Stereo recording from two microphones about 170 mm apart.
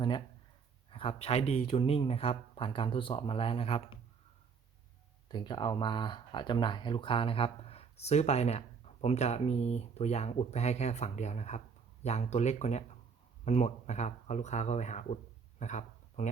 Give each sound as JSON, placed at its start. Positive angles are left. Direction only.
{"t": 0.9, "sound": "speech", "side_deg": 30}
{"t": 5.3, "sound": "speech", "side_deg": 25}
{"t": 15.5, "sound": "a sound", "side_deg": 45}